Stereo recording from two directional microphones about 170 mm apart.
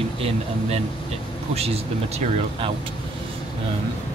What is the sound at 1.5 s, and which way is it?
Speech, 40° right (ahead or behind).